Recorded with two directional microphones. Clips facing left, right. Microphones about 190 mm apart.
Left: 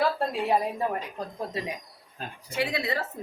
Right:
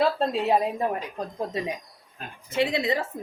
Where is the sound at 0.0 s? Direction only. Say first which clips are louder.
Right 3 dB; 20° right (ahead or behind).